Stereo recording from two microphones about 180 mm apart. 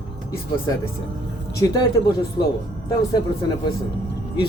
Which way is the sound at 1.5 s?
20° left (ahead or behind).